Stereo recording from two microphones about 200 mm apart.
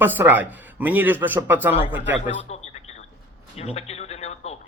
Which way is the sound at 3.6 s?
30° left (ahead or behind).